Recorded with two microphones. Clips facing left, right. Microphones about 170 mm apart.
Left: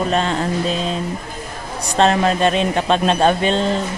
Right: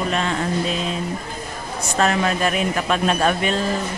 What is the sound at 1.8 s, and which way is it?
Speech, 35° left (ahead or behind).